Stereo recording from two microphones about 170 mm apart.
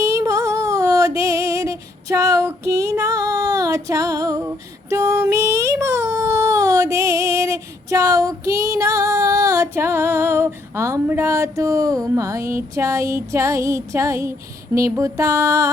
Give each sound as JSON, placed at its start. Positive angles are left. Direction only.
{"t": 0.0, "sound": "music", "side_deg": -15}